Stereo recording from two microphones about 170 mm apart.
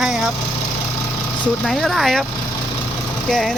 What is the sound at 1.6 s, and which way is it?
Speech, centre (ahead or behind).